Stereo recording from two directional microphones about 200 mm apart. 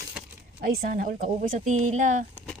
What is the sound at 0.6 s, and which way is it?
Speech, 45° right (ahead or behind).